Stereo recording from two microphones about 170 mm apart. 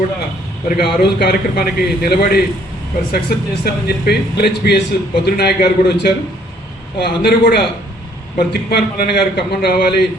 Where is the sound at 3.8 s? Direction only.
65° left (ahead or behind).